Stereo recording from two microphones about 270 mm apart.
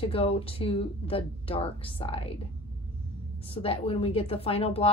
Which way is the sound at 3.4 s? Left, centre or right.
Left.